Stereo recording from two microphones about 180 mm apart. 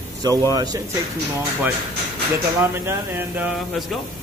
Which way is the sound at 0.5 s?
20° right (ahead or behind).